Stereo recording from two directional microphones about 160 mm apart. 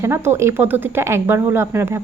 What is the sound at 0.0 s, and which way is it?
Speech, 15° right (ahead or behind).